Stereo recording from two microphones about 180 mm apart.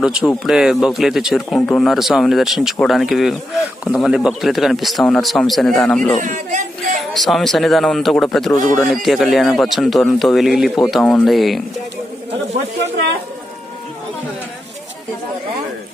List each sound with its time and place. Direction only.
0.0 s speech: 5° right (ahead or behind)
6.1 s speech: 45° right (ahead or behind)
7.0 s speech: centre (ahead or behind)